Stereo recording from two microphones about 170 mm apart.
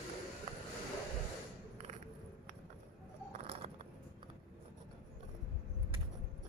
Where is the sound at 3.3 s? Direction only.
35° right (ahead or behind).